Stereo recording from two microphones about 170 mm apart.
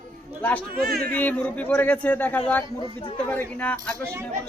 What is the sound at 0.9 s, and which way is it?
Speech, 65° right (ahead or behind).